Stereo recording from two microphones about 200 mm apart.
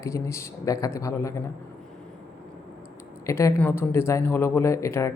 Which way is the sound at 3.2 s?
15° left (ahead or behind).